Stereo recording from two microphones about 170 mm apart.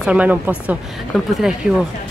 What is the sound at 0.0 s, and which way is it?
Speech, 5° right (ahead or behind).